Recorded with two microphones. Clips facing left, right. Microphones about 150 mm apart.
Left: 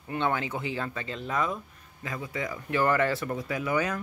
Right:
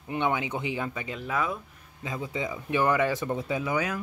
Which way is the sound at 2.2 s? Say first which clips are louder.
Right 2 dB; 20° right (ahead or behind).